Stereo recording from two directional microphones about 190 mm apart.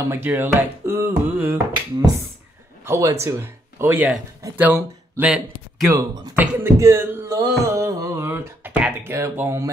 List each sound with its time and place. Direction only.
0.1 s a man's voice: 10° right (ahead or behind)
5.9 s speech: 15° right (ahead or behind)
6.4 s a sound: 15° right (ahead or behind)